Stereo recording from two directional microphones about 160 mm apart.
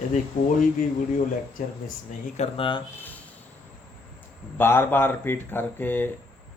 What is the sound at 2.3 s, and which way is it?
Speech, 35° left (ahead or behind).